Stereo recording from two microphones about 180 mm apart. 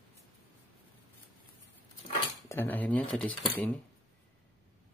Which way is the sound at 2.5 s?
10° left (ahead or behind).